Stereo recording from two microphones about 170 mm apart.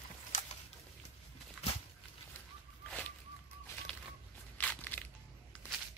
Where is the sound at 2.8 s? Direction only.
10° left (ahead or behind).